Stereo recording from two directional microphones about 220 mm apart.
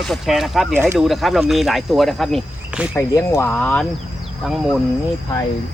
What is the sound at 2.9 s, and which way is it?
Speech, 10° left (ahead or behind).